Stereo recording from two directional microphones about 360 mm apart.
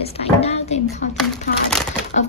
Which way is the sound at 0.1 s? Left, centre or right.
Centre.